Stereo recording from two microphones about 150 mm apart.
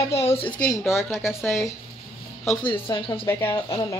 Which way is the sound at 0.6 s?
20° left (ahead or behind).